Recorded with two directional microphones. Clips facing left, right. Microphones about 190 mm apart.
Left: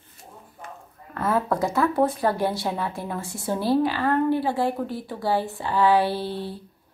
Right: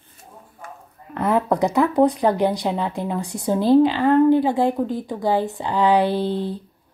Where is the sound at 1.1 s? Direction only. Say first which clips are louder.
Right 4 dB; 20° right (ahead or behind).